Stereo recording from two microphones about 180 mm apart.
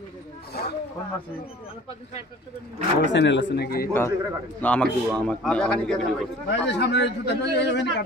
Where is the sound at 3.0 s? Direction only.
80° left; by 3.8 s 60° left (ahead or behind).